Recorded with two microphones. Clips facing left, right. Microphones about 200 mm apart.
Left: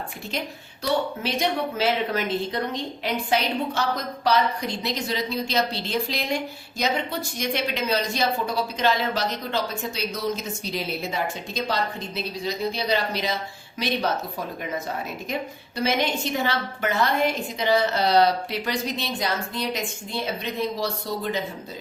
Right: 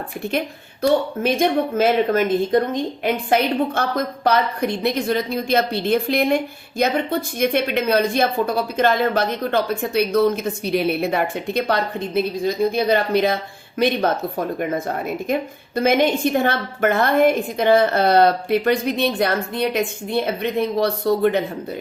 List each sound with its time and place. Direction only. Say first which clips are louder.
0.3 s speech: right 9 dB; 55° right (ahead or behind)